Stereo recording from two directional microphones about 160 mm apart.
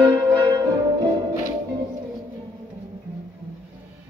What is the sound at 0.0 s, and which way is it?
Music, 25° right (ahead or behind).